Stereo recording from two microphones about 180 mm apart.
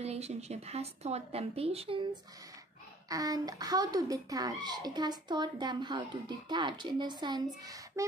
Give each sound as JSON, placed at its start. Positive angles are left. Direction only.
{"t": 0.0, "sound": "speech", "side_deg": -35}
{"t": 3.1, "sound": "speech", "side_deg": -20}